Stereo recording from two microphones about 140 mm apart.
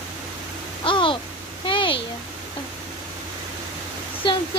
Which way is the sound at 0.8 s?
40° left (ahead or behind).